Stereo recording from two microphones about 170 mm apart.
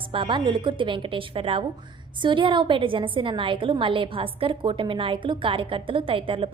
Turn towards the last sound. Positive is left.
turn(degrees=-30)  # may be behind; listen again after turning